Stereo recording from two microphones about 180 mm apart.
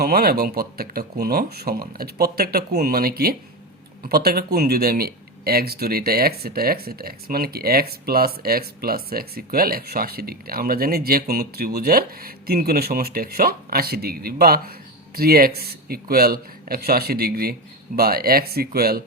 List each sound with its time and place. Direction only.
0.0 s speech: 60° right (ahead or behind)